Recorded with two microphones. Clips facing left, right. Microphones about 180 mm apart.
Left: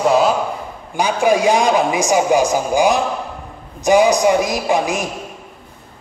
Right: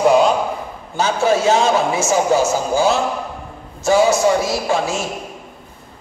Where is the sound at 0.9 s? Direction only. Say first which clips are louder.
Left 1 dB; 15° left (ahead or behind).